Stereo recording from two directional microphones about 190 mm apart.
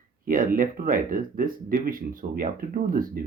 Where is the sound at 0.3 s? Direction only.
45° right (ahead or behind).